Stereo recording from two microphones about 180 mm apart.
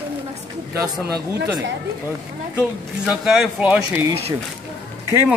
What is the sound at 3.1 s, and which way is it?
Speech, centre (ahead or behind).